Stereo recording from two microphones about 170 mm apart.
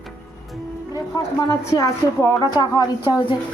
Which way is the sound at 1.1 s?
20° left (ahead or behind).